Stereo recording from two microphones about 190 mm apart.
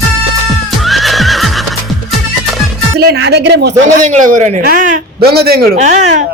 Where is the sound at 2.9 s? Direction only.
60° right (ahead or behind).